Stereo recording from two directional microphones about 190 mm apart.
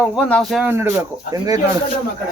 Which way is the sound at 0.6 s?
10° right (ahead or behind).